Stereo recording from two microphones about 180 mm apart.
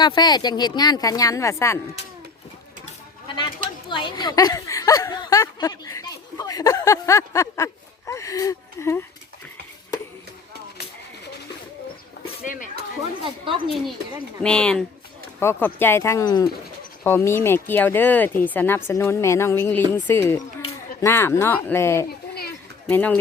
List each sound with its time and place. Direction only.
0.0 s speech: 25° left (ahead or behind)
2.8 s a sound: 25° left (ahead or behind)
3.8 s speech: 25° left (ahead or behind)
12.5 s speech: 45° left (ahead or behind)
13.2 s a woman's voice: 30° right (ahead or behind)
14.4 s speech: 5° left (ahead or behind)